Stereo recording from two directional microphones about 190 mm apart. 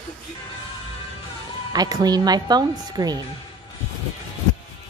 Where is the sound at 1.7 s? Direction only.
20° right (ahead or behind).